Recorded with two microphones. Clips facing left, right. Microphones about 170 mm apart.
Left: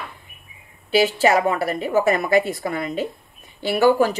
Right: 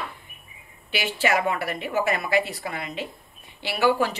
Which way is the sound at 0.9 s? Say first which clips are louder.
Left 7 dB; 40° left (ahead or behind).